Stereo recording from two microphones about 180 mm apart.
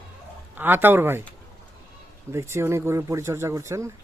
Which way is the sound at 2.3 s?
15° right (ahead or behind).